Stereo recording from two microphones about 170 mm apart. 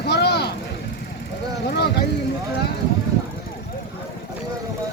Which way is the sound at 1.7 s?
70° left (ahead or behind).